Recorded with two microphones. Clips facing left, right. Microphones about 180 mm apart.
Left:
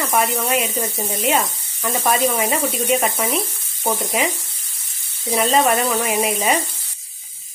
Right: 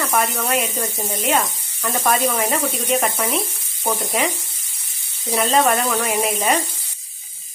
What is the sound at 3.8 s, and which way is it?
Sizzle, 15° left (ahead or behind).